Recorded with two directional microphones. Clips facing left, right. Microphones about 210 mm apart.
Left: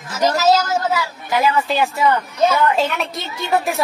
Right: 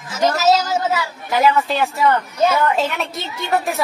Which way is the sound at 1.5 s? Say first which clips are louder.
Even; centre (ahead or behind).